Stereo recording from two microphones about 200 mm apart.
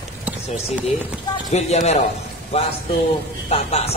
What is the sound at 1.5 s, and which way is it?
A man's voice, 35° left (ahead or behind).